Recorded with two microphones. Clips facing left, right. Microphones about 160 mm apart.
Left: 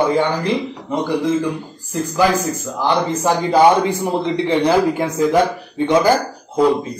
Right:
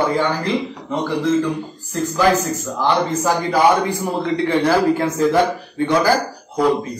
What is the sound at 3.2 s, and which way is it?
A man's voice, 20° left (ahead or behind).